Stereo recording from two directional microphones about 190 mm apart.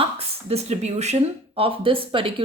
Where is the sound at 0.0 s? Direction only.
30° right (ahead or behind).